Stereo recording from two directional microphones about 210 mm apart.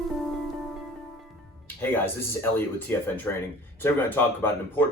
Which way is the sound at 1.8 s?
10° left (ahead or behind).